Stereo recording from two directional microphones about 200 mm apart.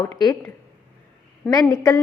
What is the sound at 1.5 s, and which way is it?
Speech, 20° left (ahead or behind).